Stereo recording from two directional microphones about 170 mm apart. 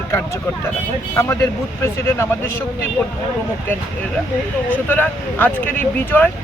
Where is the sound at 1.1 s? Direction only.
15° left (ahead or behind).